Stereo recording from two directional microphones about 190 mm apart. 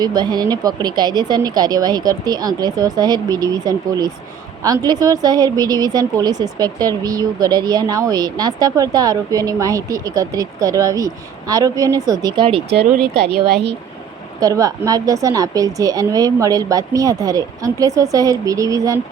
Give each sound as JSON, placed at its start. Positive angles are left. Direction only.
{"t": 0.0, "sound": "a woman's voice", "side_deg": -20}
{"t": 12.7, "sound": "speech", "side_deg": -60}
{"t": 14.3, "sound": "a woman's voice", "side_deg": -20}